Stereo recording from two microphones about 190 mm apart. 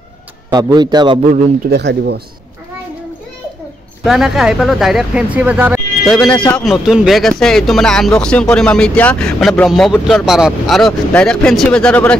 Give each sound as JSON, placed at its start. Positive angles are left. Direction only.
{"t": 0.5, "sound": "a man's voice", "side_deg": -20}
{"t": 1.7, "sound": "speech", "side_deg": -60}
{"t": 4.0, "sound": "speech", "side_deg": 0}
{"t": 6.0, "sound": "speech", "side_deg": 5}